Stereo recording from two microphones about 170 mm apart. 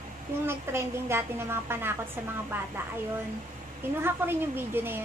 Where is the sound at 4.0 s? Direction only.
15° right (ahead or behind).